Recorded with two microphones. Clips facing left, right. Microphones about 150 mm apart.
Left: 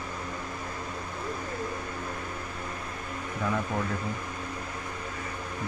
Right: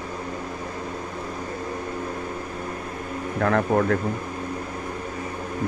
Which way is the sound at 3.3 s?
70° right (ahead or behind).